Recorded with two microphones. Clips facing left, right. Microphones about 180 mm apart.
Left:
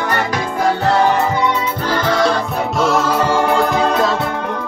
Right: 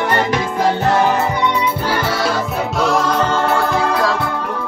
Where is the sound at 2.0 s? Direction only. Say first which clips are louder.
Left 3 dB; 5° right (ahead or behind); by 4.3 s 20° left (ahead or behind).